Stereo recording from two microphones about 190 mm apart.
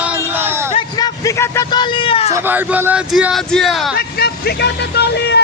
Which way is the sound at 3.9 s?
55° left (ahead or behind).